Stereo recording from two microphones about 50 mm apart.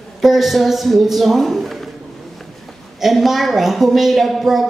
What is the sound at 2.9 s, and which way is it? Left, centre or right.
A man's voice, centre.